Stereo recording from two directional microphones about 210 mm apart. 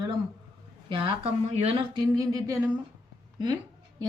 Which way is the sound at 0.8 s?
25° right (ahead or behind).